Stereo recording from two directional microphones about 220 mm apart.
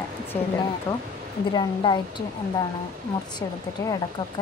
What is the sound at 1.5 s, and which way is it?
Speech, 20° left (ahead or behind).